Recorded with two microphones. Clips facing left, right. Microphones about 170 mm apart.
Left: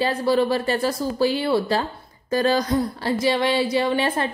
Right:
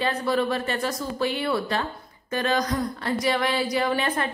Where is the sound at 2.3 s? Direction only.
35° left (ahead or behind).